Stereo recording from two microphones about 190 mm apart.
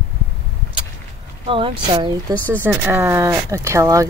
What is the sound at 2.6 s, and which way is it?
Speech, 10° right (ahead or behind).